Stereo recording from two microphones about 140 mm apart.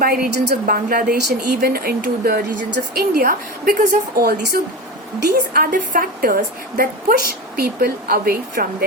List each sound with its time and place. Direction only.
0.0 s speech: 90° right